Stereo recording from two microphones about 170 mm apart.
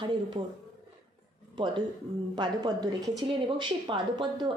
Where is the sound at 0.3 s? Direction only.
40° right (ahead or behind).